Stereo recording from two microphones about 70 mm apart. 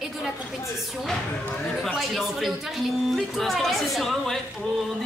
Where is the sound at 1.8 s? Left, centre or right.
Centre.